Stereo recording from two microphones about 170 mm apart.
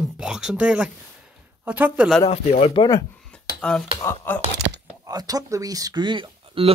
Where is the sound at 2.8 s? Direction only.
20° left (ahead or behind).